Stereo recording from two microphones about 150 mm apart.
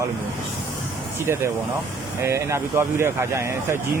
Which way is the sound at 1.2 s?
15° right (ahead or behind).